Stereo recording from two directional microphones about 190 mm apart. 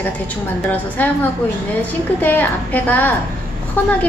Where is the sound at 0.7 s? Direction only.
10° left (ahead or behind).